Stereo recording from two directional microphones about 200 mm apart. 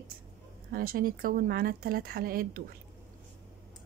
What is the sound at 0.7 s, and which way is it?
Speech, 45° right (ahead or behind).